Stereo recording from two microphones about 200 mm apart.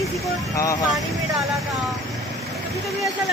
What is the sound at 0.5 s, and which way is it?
Speech, 15° left (ahead or behind).